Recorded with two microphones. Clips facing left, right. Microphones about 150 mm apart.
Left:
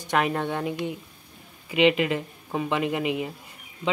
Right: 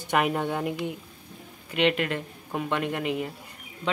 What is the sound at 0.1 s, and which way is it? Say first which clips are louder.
Speech: even; 5° right (ahead or behind).